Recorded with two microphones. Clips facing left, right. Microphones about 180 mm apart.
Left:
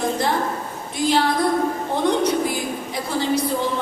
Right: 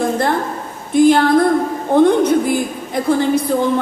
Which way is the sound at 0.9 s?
55° right (ahead or behind).